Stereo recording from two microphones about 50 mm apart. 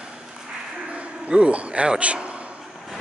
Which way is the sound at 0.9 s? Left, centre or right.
Right.